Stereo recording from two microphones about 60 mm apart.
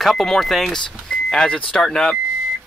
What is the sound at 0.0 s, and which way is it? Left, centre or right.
Speech, centre.